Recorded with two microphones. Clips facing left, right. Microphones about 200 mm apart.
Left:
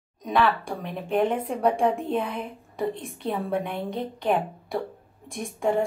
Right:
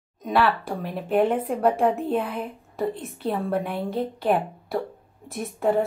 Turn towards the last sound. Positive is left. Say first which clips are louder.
# right 2 dB
turn(degrees=-5)  # may be behind; listen again after turning